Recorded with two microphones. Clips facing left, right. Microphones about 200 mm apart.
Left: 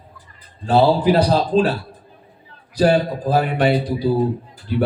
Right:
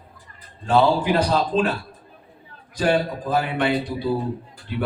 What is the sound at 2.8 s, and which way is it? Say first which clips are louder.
A man's voice: left 5 dB; 35° left (ahead or behind).